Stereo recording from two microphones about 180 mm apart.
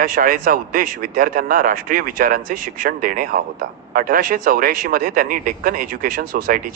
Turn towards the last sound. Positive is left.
turn(degrees=-50)  # may be behind; listen again after turning